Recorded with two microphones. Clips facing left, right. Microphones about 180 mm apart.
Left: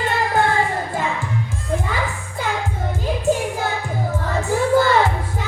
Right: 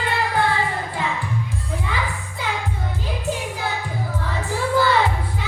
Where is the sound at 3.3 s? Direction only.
45° left (ahead or behind).